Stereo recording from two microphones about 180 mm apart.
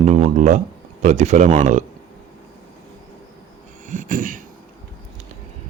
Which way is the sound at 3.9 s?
45° right (ahead or behind).